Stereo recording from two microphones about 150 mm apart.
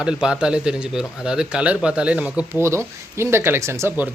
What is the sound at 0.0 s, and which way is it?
Speech, 5° right (ahead or behind).